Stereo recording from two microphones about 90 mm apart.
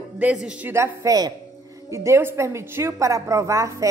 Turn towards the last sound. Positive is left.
turn(degrees=-35)  # may be behind; listen again after turning